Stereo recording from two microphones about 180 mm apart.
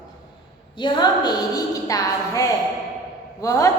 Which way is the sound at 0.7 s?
25° left (ahead or behind).